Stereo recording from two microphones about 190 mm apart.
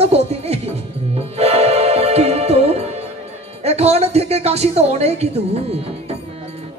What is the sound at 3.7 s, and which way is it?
Speech, 35° right (ahead or behind).